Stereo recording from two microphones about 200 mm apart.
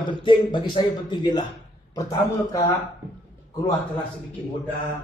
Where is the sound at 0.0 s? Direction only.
25° left (ahead or behind).